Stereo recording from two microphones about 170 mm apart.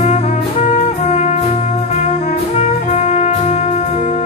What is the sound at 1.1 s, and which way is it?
Music, 40° left (ahead or behind).